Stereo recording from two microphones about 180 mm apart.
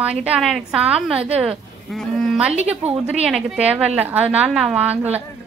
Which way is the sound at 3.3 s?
Centre (ahead or behind).